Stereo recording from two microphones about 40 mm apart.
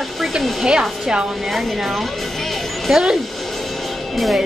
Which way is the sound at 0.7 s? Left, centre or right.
Centre.